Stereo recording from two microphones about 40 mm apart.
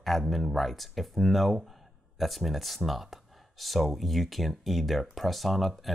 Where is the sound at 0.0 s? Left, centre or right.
Centre.